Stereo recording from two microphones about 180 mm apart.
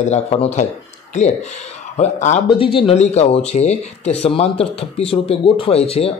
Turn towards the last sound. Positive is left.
turn(degrees=35)  # may be behind; listen again after turning